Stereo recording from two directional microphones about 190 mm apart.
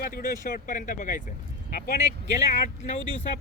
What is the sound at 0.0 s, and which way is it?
Speech, 50° left (ahead or behind).